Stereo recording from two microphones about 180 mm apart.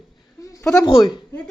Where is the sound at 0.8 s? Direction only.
20° left (ahead or behind).